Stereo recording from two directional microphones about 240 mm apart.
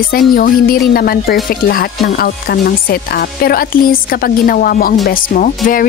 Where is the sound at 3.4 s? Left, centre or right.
Left.